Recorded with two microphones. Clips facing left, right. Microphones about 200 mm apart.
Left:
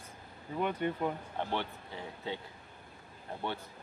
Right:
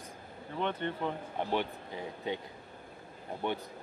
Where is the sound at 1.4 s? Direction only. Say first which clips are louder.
Right 6 dB; 15° right (ahead or behind).